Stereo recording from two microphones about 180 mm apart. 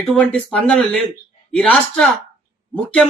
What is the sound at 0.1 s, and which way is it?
Speech, 5° left (ahead or behind).